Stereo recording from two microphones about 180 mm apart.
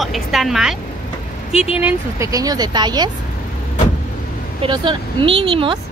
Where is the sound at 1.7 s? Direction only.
15° right (ahead or behind).